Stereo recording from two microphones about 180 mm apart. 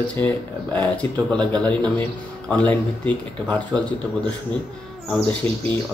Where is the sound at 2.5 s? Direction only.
10° left (ahead or behind).